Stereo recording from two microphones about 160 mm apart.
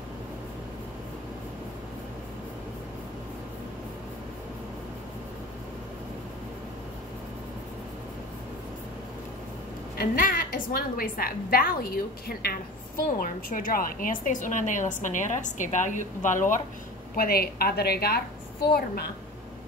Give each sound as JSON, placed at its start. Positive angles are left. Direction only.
{"t": 9.9, "sound": "a woman's voice", "side_deg": 60}
{"t": 17.1, "sound": "a woman's voice", "side_deg": 70}